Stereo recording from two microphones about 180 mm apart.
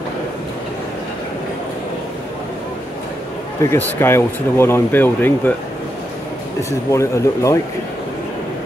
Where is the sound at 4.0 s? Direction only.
15° left (ahead or behind).